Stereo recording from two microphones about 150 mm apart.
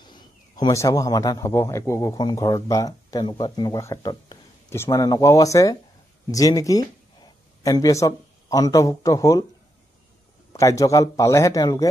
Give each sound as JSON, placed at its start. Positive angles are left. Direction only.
{"t": 0.0, "sound": "a man's voice", "side_deg": 30}
{"t": 10.5, "sound": "a man's voice", "side_deg": 20}